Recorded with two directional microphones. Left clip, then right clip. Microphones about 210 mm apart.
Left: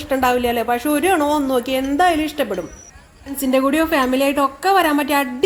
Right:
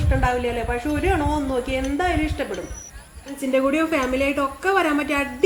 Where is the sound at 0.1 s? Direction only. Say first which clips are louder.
Left 6 dB; 50° left (ahead or behind).